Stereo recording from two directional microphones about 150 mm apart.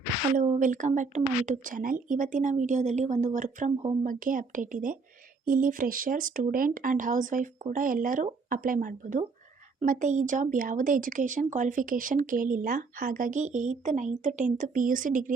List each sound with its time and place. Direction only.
0.3 s speech: 55° right (ahead or behind)